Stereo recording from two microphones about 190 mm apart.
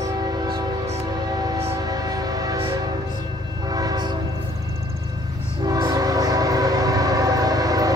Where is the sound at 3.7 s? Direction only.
20° right (ahead or behind).